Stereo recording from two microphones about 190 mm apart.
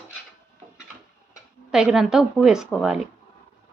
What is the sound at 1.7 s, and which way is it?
Speech, 5° right (ahead or behind).